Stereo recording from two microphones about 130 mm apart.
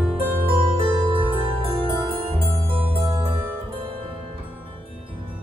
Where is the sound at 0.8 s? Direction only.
40° right (ahead or behind).